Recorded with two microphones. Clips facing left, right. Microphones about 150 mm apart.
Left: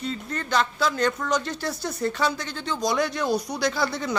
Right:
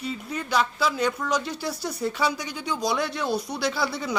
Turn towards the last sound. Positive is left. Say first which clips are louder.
# left 1 dB
turn(degrees=-5)  # may be behind; listen again after turning